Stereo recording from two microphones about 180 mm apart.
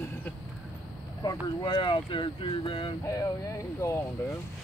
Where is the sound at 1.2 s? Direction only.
25° left (ahead or behind).